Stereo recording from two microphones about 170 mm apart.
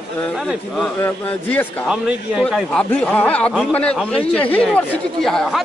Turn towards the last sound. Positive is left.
turn(degrees=0)  # may be behind; listen again after turning